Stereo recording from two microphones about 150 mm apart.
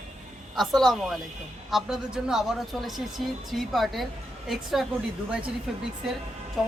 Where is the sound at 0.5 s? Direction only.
Centre (ahead or behind).